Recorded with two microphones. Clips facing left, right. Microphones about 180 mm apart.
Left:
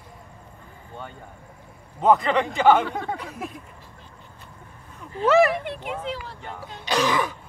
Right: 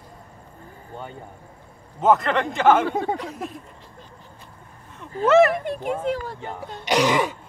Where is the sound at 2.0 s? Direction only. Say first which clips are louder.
Even; centre (ahead or behind).